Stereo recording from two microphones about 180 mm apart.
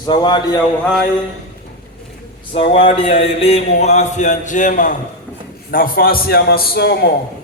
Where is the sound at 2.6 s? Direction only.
30° left (ahead or behind); by 7.1 s 65° left (ahead or behind).